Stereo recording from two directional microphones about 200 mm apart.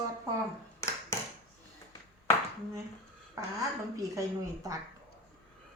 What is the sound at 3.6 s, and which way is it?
A woman's voice, 15° right (ahead or behind).